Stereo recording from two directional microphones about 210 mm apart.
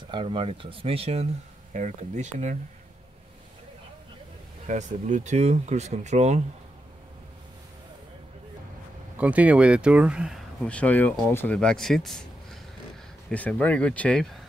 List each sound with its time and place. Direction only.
0.1 s speech: 25° right (ahead or behind)
4.6 s speech: 35° right (ahead or behind)
9.2 s speech: 5° right (ahead or behind)